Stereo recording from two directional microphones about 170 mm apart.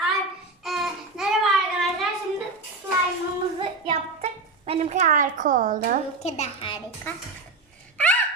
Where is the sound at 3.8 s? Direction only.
35° right (ahead or behind); by 5.9 s 50° right (ahead or behind).